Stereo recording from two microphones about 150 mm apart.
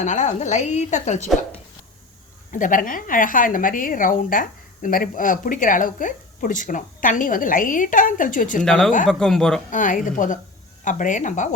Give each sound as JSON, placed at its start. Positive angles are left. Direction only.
{"t": 0.0, "sound": "a woman's voice", "side_deg": 55}
{"t": 2.5, "sound": "a woman's voice", "side_deg": 60}
{"t": 8.6, "sound": "speech", "side_deg": 5}
{"t": 9.6, "sound": "a woman's voice", "side_deg": 60}